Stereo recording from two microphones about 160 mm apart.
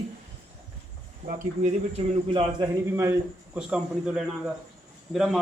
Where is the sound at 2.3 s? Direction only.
30° right (ahead or behind).